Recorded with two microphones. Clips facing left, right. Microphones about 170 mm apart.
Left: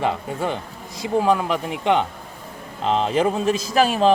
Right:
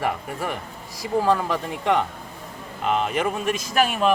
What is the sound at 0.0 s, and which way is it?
Speech, 25° left (ahead or behind).